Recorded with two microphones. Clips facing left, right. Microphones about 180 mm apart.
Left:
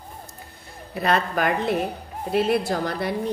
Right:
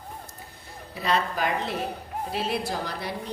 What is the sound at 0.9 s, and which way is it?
A woman's voice, 55° left (ahead or behind).